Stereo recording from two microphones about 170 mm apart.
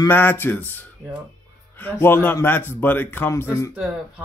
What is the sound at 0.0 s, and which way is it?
Speech, 10° left (ahead or behind).